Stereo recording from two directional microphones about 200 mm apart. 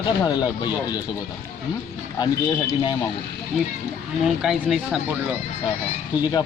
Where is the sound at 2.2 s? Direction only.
20° left (ahead or behind).